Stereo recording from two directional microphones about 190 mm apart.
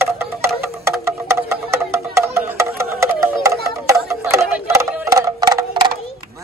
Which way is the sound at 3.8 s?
15° right (ahead or behind).